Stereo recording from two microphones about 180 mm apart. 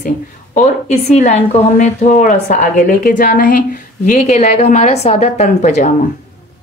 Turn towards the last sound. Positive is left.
turn(degrees=45)  # may be behind; listen again after turning